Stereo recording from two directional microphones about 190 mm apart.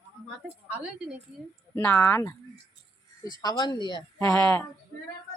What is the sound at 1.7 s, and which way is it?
Speech, 10° left (ahead or behind).